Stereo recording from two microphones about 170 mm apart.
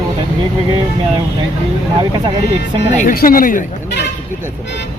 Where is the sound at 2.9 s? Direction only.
45° left (ahead or behind).